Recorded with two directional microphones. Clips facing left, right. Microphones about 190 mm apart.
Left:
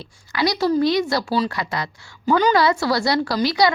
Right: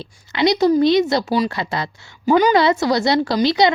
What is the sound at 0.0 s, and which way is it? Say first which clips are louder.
A woman's voice: right 4 dB; 20° right (ahead or behind).